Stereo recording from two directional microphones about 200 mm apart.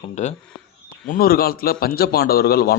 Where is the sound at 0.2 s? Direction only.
35° left (ahead or behind).